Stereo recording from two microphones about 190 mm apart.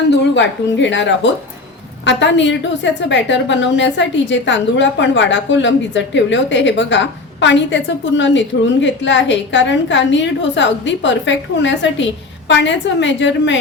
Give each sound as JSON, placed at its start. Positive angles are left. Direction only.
{"t": 0.1, "sound": "a woman's voice", "side_deg": 70}